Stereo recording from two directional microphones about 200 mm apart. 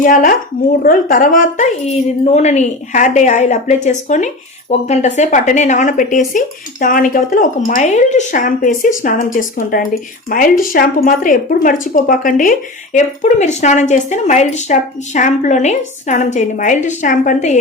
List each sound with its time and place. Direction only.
0.0 s speech: 45° left (ahead or behind)